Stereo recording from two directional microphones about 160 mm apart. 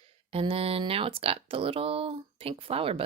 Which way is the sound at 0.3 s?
35° right (ahead or behind).